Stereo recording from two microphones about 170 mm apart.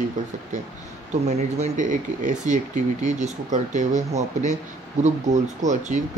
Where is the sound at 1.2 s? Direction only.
45° right (ahead or behind).